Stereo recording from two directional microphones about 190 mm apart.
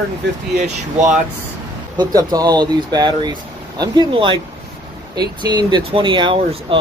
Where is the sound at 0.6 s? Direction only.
40° right (ahead or behind).